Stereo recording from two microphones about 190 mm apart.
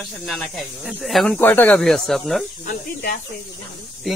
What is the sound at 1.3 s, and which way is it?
Speech, 10° left (ahead or behind).